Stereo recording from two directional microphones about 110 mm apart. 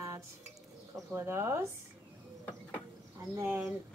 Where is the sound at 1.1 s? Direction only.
20° right (ahead or behind).